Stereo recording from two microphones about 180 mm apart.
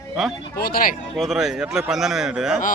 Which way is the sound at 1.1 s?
Centre (ahead or behind).